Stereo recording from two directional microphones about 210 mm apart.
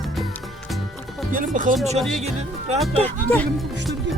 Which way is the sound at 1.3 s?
40° right (ahead or behind).